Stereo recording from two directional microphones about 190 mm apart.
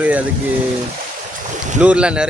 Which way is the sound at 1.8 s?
5° right (ahead or behind).